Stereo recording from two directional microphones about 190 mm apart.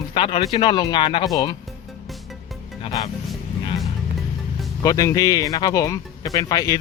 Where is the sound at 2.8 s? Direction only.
30° left (ahead or behind).